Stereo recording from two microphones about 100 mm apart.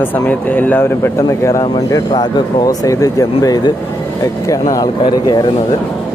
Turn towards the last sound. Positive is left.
turn(degrees=40)  # may be behind; listen again after turning